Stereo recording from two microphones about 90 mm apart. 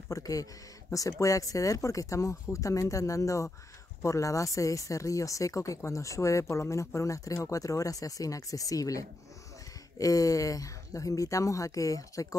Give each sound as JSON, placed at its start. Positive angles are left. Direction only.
{"t": 0.1, "sound": "speech", "side_deg": 40}